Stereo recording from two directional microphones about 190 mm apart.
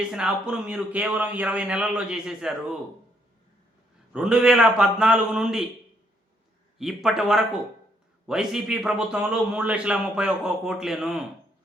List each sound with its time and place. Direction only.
0.1 s a man's voice: 5° right (ahead or behind)
4.1 s a man's voice: 5° right (ahead or behind)
6.7 s a man's voice: centre (ahead or behind)